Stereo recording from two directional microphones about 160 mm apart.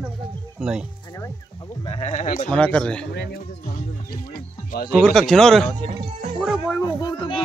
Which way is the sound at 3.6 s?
65° left (ahead or behind).